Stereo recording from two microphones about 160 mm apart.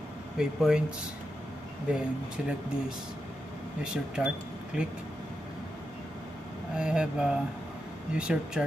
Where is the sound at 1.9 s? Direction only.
5° right (ahead or behind).